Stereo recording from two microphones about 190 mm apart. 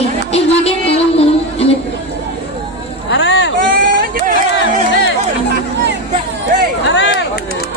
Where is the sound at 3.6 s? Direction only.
50° right (ahead or behind).